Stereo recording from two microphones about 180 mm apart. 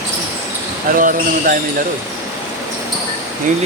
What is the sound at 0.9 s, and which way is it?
Speech, 50° right (ahead or behind).